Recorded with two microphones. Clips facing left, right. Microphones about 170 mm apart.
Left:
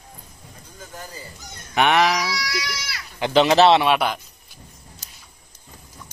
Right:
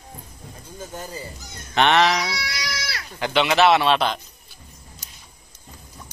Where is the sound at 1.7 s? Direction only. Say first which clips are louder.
Even; 10° left (ahead or behind).